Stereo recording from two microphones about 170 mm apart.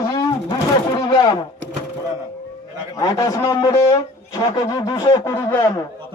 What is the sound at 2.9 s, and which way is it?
A man's voice, 20° left (ahead or behind).